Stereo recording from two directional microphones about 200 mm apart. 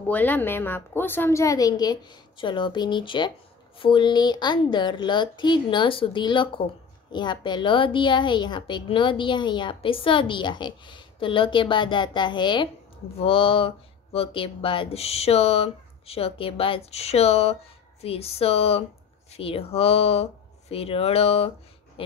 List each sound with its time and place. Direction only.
0.1 s a woman's voice: 10° left (ahead or behind); by 21.5 s 30° left (ahead or behind)